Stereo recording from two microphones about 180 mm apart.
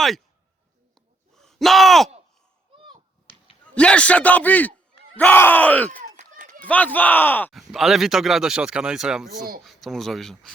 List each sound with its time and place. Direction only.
1.3 s groan: centre (ahead or behind)
2.7 s a sound: 30° right (ahead or behind)
3.8 s a man's voice: 5° left (ahead or behind)
5.9 s run: 50° right (ahead or behind)
6.7 s a man's voice: 10° left (ahead or behind)
7.5 s speech: centre (ahead or behind)